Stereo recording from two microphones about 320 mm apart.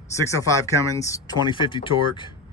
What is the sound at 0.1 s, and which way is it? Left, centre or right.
Speech, centre.